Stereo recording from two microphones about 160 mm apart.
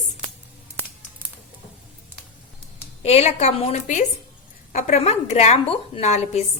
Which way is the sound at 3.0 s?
40° left (ahead or behind).